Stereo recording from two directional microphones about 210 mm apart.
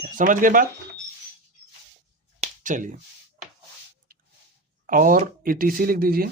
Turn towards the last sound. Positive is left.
turn(degrees=-45)  # may be behind; listen again after turning